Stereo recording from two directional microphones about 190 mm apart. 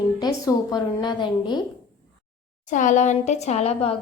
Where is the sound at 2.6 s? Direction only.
40° left (ahead or behind).